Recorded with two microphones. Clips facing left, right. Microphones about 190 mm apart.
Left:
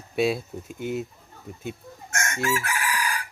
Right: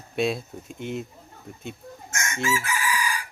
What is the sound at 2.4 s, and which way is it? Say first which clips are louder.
Chicken: right 1 dB; 60° left (ahead or behind).